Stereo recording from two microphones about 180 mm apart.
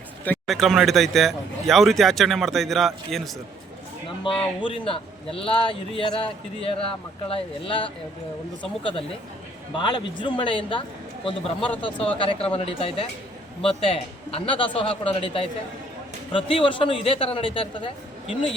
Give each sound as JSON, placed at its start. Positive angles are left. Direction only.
{"t": 0.3, "sound": "a man's voice", "side_deg": 0}
{"t": 4.2, "sound": "a man's voice", "side_deg": 30}